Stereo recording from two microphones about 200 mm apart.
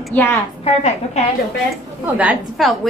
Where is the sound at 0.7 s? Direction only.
35° left (ahead or behind).